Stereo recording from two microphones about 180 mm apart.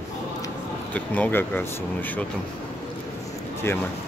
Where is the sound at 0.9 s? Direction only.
10° left (ahead or behind).